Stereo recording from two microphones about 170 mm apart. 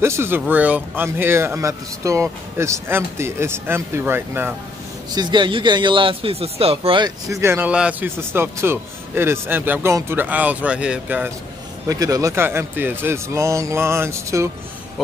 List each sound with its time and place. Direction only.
0.0 s speech: 15° right (ahead or behind)
5.1 s speech: 25° right (ahead or behind)
7.2 s speech: 15° right (ahead or behind)
11.9 s speech: 20° right (ahead or behind)